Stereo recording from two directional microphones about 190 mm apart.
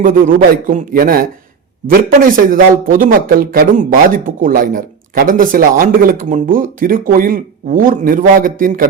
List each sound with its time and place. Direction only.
0.0 s speech: 50° right (ahead or behind)